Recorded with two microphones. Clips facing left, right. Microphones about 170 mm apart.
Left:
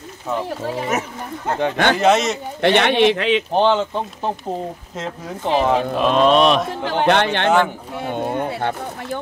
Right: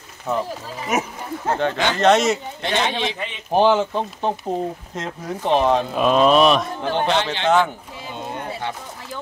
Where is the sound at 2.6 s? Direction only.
65° left (ahead or behind); by 3.4 s 90° left.